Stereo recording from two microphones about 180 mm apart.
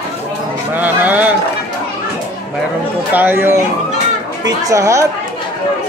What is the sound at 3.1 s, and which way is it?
Speech, 10° right (ahead or behind).